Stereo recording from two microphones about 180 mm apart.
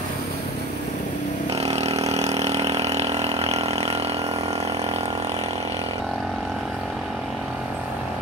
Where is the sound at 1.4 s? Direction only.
35° right (ahead or behind).